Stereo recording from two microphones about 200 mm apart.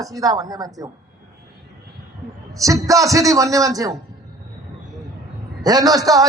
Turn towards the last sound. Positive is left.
turn(degrees=-20)  # may be behind; listen again after turning